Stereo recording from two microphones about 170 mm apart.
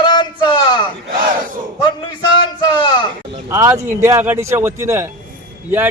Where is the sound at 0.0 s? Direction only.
25° left (ahead or behind).